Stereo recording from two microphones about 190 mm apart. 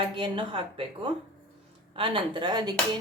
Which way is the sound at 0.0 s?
25° right (ahead or behind).